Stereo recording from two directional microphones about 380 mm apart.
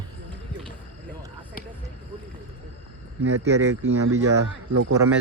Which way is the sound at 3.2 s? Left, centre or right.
Right.